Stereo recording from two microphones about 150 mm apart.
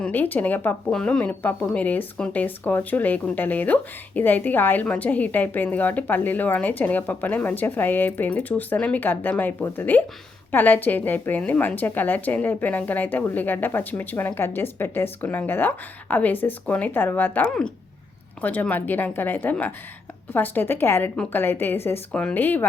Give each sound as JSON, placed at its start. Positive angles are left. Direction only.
{"t": 0.0, "sound": "speech", "side_deg": 10}